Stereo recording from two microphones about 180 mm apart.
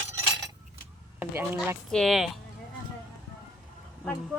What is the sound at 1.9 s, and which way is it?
Speech, centre (ahead or behind).